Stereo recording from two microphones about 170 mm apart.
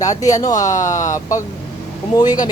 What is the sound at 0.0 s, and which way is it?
Speech, 20° left (ahead or behind).